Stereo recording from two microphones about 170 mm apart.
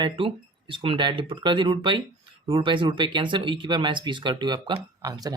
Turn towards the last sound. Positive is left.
turn(degrees=-20)  # may be behind; listen again after turning